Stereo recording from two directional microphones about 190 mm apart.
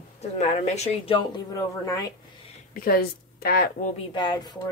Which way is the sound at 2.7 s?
55° left (ahead or behind).